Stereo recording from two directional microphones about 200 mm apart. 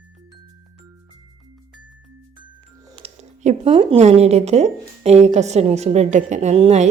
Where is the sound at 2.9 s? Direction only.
30° right (ahead or behind).